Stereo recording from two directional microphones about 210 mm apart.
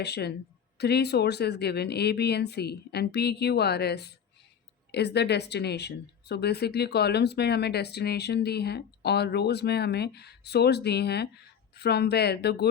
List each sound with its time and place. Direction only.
0.0 s speech: 50° left (ahead or behind)